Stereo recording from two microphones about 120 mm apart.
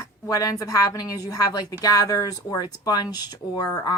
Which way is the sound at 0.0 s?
30° left (ahead or behind).